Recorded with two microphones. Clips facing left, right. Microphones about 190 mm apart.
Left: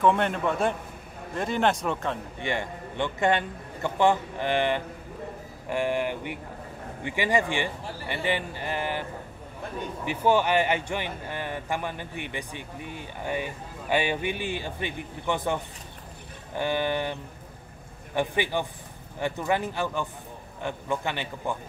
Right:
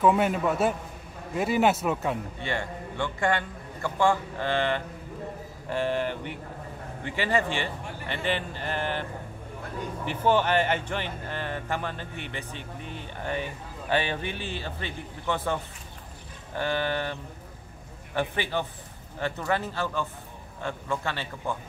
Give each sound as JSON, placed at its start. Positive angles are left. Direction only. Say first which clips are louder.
{"t": 0.0, "sound": "a man's voice", "louder": "right 1 dB", "side_deg": -5}
{"t": 2.4, "sound": "speech", "louder": "left 3 dB", "side_deg": 15}
{"t": 10.0, "sound": "speech", "louder": "left 1 dB", "side_deg": 10}